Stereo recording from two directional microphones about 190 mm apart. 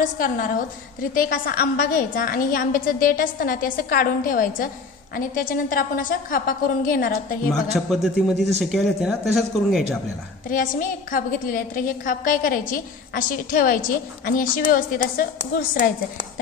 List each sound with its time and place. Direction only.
0.0 s a woman's voice: 45° left (ahead or behind)
7.9 s a man's voice: centre (ahead or behind)
10.5 s a woman's voice: 45° left (ahead or behind)